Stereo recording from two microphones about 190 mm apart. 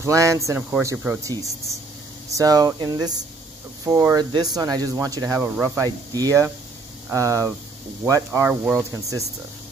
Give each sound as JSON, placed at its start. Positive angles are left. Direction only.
{"t": 0.0, "sound": "speech", "side_deg": -15}